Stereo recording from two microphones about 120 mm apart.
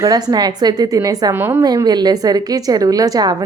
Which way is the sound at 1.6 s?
35° right (ahead or behind).